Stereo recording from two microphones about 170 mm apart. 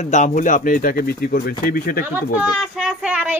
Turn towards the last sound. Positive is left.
turn(degrees=-5)  # may be behind; listen again after turning